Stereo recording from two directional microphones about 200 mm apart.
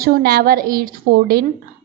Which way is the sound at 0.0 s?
50° right (ahead or behind).